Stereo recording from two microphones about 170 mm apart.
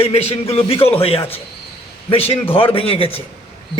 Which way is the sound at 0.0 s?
35° left (ahead or behind).